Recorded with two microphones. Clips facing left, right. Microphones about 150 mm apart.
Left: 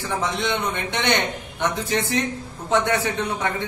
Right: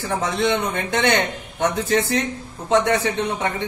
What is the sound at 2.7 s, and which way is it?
Speech, 25° right (ahead or behind).